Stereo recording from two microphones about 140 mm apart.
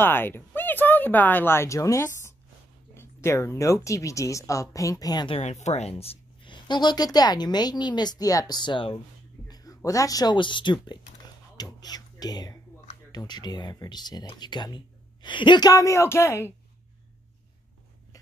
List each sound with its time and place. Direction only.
0.0 s speech: 15° left (ahead or behind); by 5.4 s 30° left (ahead or behind)
5.4 s speech: 55° left (ahead or behind); by 9.0 s 35° left (ahead or behind)
9.5 s a sound: 25° left (ahead or behind)
9.8 s speech: 25° left (ahead or behind)
11.5 s whispering: 30° left (ahead or behind)
13.1 s speech: 30° left (ahead or behind)